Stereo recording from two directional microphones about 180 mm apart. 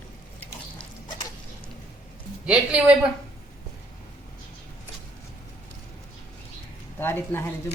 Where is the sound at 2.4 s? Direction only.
5° right (ahead or behind).